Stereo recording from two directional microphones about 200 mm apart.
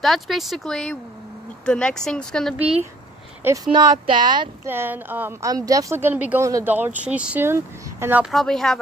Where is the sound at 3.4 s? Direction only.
15° right (ahead or behind).